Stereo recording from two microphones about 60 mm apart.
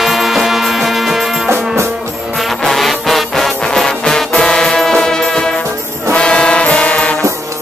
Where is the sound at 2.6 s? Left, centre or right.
Centre.